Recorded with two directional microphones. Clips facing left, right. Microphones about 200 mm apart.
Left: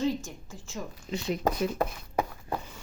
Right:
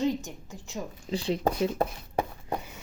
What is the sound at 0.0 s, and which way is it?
Speech, 20° right (ahead or behind).